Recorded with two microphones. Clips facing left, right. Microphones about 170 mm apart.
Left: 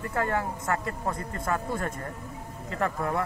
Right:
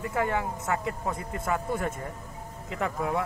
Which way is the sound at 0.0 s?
10° right (ahead or behind).